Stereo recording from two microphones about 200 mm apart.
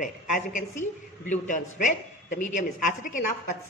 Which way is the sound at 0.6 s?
40° left (ahead or behind).